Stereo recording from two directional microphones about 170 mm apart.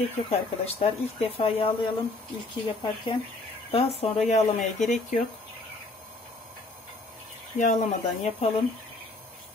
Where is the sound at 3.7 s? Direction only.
35° left (ahead or behind).